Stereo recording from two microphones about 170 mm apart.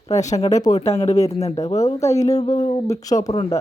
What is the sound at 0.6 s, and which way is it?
Speech, 20° left (ahead or behind).